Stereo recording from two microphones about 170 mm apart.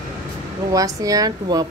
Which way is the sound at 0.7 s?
20° right (ahead or behind).